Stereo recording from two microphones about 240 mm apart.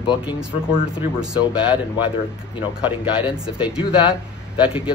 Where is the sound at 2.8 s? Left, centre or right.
Centre.